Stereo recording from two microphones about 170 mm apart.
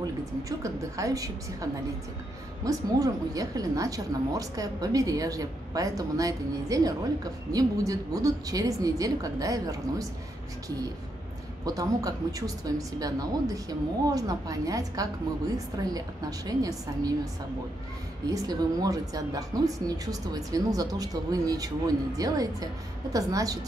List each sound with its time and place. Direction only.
0.0 s a woman's voice: 20° right (ahead or behind)
11.6 s a woman's voice: 20° right (ahead or behind)
18.3 s a woman's voice: 20° right (ahead or behind)